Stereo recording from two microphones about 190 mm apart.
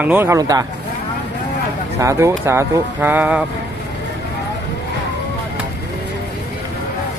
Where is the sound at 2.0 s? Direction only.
15° right (ahead or behind).